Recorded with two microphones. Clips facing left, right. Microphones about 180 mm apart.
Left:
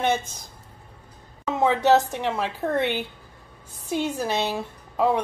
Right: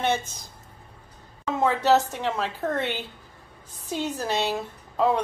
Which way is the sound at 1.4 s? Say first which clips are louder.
Left 2 dB; 15° left (ahead or behind).